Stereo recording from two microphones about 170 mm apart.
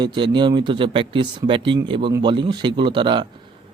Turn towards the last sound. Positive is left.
turn(degrees=-30)  # may be behind; listen again after turning